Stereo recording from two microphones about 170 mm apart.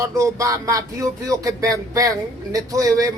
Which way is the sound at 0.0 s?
20° right (ahead or behind).